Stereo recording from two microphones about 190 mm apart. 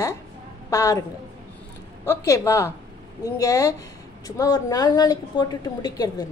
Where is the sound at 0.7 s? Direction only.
15° left (ahead or behind).